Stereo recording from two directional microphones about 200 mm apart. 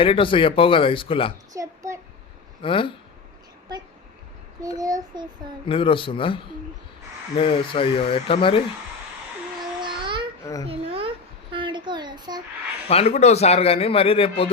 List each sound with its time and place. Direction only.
0.0 s a man's voice: 25° left (ahead or behind)
1.5 s a sound: 15° right (ahead or behind)
2.6 s a man's voice: 25° left (ahead or behind)
4.8 s child singing: 20° right (ahead or behind)
5.6 s a man's voice: 25° left (ahead or behind)
9.8 s babbling: 25° right (ahead or behind)
10.4 s a child's voice: 15° left (ahead or behind)
10.7 s babbling: 30° right (ahead or behind)
11.5 s a sound: 25° right (ahead or behind)
12.9 s a man's voice: 30° left (ahead or behind)